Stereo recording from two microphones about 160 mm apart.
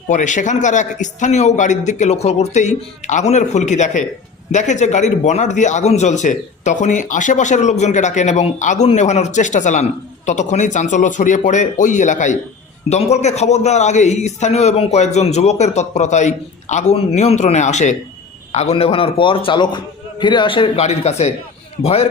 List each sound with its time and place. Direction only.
0.1 s a man's voice: 50° left (ahead or behind)